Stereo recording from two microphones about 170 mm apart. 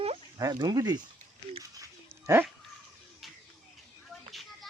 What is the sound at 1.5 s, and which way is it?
Dog, 20° right (ahead or behind).